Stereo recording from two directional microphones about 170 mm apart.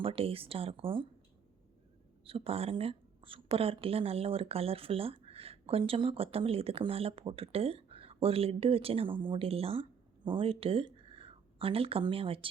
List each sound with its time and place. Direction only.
0.0 s a woman's voice: 35° right (ahead or behind)
2.2 s a woman's voice: 35° right (ahead or behind)